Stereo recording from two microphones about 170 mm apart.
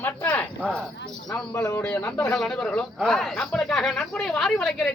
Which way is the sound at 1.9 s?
5° left (ahead or behind).